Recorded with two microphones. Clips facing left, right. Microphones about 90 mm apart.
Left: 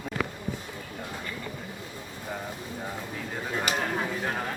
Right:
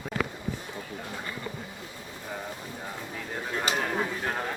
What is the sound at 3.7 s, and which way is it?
Speech, centre (ahead or behind).